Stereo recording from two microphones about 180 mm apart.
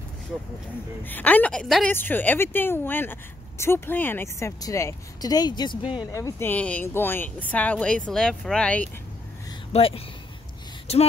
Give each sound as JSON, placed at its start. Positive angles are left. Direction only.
{"t": 1.0, "sound": "a woman's voice", "side_deg": 10}
{"t": 6.1, "sound": "a woman's voice", "side_deg": 15}
{"t": 9.7, "sound": "speech", "side_deg": 30}
{"t": 10.9, "sound": "a sound", "side_deg": 35}